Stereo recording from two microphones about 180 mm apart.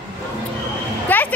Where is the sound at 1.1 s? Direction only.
10° left (ahead or behind).